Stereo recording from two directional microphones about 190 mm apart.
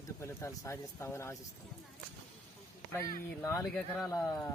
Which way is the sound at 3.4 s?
15° left (ahead or behind).